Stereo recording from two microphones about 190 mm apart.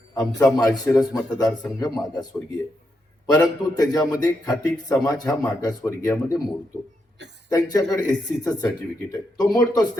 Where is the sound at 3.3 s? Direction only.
20° left (ahead or behind).